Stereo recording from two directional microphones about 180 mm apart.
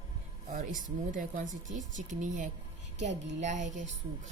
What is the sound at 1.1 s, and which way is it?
Speech, 45° right (ahead or behind).